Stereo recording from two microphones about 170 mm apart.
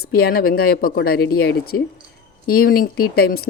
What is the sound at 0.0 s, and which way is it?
A woman's voice, 65° left (ahead or behind).